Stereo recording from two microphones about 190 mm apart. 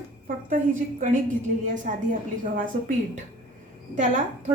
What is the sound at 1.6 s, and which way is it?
Speech, 40° right (ahead or behind).